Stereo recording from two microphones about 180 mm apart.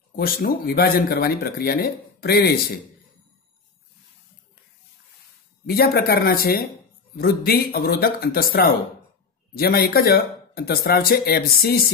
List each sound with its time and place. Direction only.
0.1 s speech: 55° left (ahead or behind)
5.7 s speech: 60° left (ahead or behind)